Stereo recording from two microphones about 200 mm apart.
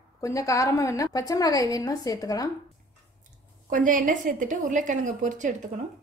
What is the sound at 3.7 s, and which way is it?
A woman's voice, 40° right (ahead or behind).